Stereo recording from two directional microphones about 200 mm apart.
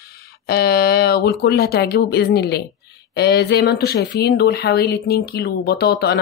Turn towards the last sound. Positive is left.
turn(degrees=50)  # may be behind; listen again after turning